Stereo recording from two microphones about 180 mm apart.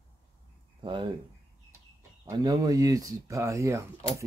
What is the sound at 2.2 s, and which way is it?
Speech, 20° right (ahead or behind).